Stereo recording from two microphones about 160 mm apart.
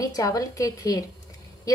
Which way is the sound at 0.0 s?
20° left (ahead or behind).